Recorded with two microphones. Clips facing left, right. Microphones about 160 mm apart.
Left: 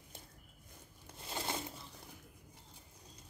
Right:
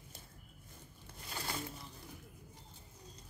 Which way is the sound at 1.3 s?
20° left (ahead or behind).